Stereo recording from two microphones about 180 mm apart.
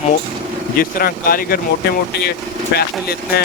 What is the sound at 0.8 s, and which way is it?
Speech, 55° left (ahead or behind).